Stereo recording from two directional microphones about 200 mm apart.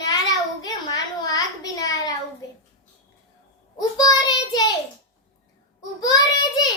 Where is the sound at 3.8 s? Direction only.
20° left (ahead or behind).